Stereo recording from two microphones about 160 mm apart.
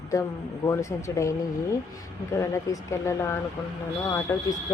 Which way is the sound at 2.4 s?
20° left (ahead or behind).